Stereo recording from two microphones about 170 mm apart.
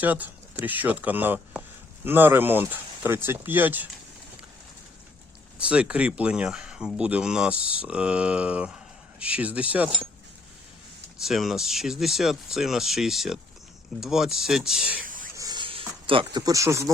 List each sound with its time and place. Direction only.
0.0 s speech: 10° right (ahead or behind)
5.5 s speech: 5° right (ahead or behind)
11.2 s speech: centre (ahead or behind)
15.0 s whispering: 55° right (ahead or behind)
15.4 s a sound: 25° right (ahead or behind)
16.5 s speech: 20° right (ahead or behind)